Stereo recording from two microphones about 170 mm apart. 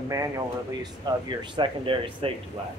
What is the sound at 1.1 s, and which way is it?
Speech, 25° right (ahead or behind).